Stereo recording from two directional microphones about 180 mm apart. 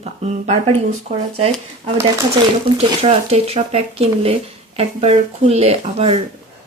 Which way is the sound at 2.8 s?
35° right (ahead or behind).